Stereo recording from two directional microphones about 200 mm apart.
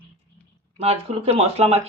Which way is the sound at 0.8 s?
30° right (ahead or behind).